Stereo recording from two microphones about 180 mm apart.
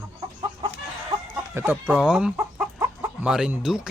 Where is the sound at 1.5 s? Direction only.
10° right (ahead or behind).